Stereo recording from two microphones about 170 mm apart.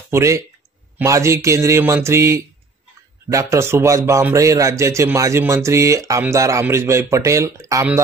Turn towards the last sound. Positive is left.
turn(degrees=-15)  # may be behind; listen again after turning